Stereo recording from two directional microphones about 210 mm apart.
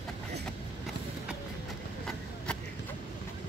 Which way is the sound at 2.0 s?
5° left (ahead or behind).